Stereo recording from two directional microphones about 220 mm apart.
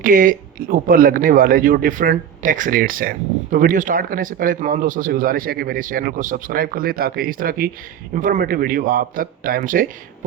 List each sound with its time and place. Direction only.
0.0 s speech: 40° right (ahead or behind)